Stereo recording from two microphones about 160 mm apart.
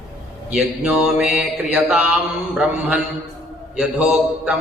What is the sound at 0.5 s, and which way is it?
Mantra, 5° right (ahead or behind).